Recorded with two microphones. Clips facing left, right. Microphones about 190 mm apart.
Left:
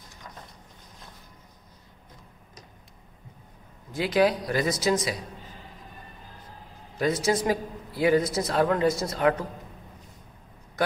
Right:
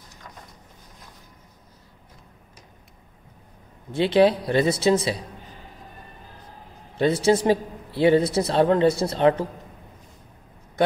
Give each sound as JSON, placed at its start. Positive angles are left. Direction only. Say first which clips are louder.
{"t": 3.9, "sound": "a man's voice", "louder": "right 5 dB", "side_deg": -30}
{"t": 7.0, "sound": "a man's voice", "louder": "right 5 dB", "side_deg": -30}